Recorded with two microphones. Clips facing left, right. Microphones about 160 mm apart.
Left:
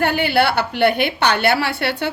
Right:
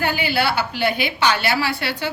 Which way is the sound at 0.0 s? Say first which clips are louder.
Left 4 dB; 65° left (ahead or behind).